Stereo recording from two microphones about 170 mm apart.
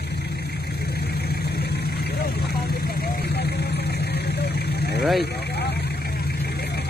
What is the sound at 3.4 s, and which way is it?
Vehicle, 75° left (ahead or behind).